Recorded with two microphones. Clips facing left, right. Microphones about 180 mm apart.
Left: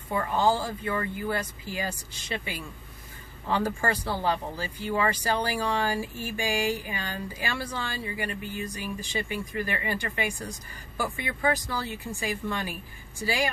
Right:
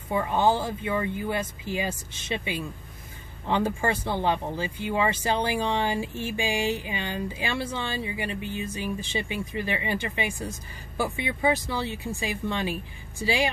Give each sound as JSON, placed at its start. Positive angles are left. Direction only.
{"t": 0.1, "sound": "speech", "side_deg": -20}